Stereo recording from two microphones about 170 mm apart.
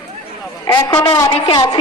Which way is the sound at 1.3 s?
35° left (ahead or behind).